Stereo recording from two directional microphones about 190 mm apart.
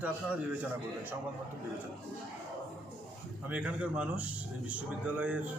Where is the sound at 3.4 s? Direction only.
5° right (ahead or behind).